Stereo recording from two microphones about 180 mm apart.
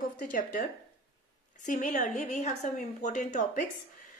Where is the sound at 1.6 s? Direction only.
45° left (ahead or behind).